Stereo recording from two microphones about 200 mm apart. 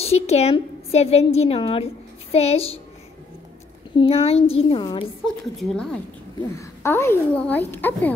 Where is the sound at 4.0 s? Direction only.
30° left (ahead or behind).